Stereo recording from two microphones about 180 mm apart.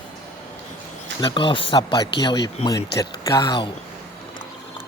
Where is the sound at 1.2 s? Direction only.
30° left (ahead or behind).